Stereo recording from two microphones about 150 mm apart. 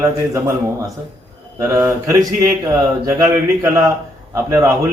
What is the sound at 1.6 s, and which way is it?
A man's voice, 20° right (ahead or behind).